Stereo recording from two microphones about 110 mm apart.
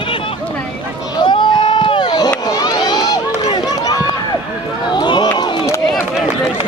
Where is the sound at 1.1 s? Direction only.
40° left (ahead or behind).